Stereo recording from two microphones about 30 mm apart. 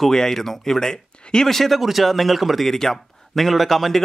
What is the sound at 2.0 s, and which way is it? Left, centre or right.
Speech, centre.